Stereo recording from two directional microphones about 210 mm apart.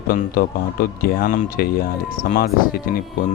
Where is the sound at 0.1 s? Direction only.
45° left (ahead or behind).